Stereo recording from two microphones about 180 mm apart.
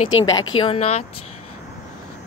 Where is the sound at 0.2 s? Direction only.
20° left (ahead or behind); by 1.0 s 35° left (ahead or behind).